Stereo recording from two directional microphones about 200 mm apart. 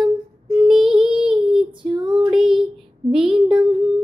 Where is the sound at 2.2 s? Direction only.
25° right (ahead or behind).